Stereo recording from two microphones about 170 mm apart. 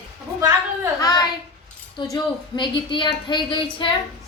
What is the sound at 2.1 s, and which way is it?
A woman's voice, 25° left (ahead or behind).